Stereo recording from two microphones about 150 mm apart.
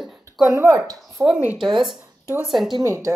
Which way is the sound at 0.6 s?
25° right (ahead or behind).